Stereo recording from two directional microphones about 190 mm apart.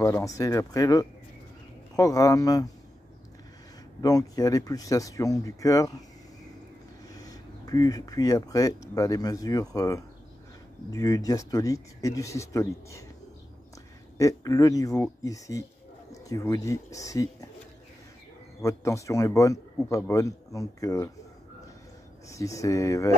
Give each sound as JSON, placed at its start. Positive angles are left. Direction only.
{"t": 0.0, "sound": "a man's voice", "side_deg": 15}
{"t": 4.0, "sound": "a man's voice", "side_deg": 20}
{"t": 7.2, "sound": "a man's voice", "side_deg": 20}
{"t": 14.1, "sound": "a man's voice", "side_deg": 15}
{"t": 18.6, "sound": "a man's voice", "side_deg": 15}
{"t": 22.3, "sound": "a man's voice", "side_deg": 15}